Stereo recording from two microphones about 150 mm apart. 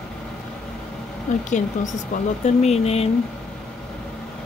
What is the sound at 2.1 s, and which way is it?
Speech, 50° left (ahead or behind).